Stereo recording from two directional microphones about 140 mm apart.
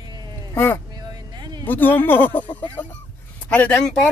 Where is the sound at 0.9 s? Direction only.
30° right (ahead or behind).